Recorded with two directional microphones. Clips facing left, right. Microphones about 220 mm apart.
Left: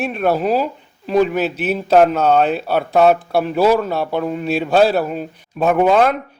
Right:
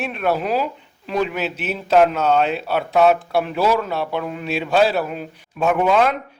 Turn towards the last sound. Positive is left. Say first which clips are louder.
# left 3 dB
turn(degrees=45)  # may be behind; listen again after turning